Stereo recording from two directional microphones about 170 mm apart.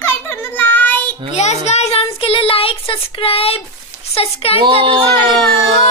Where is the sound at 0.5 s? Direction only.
10° left (ahead or behind).